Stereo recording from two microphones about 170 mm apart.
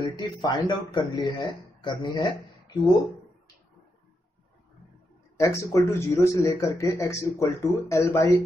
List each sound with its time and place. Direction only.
0.0 s a man's voice: 25° left (ahead or behind)
5.4 s speech: 20° left (ahead or behind)